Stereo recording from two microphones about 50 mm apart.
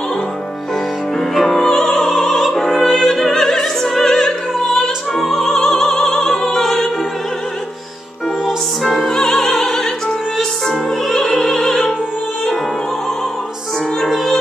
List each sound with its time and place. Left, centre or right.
1.3 s music: centre
8.5 s music: centre
10.7 s opera: centre